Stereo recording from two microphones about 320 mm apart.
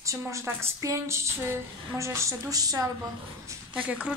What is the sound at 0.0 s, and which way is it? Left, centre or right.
A woman's voice, centre.